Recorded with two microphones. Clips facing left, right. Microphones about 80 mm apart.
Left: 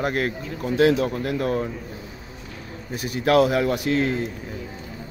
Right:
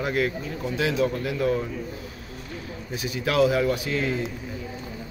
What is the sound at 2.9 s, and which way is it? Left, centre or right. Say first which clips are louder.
Speech: left 7 dB; left.